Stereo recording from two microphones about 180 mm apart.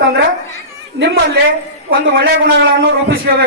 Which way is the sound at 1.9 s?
60° right (ahead or behind).